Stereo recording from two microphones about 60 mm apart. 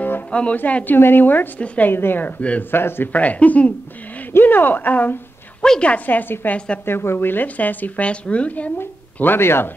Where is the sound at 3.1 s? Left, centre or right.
Left.